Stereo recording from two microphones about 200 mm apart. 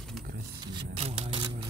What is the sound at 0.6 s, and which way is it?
Speech, 25° right (ahead or behind).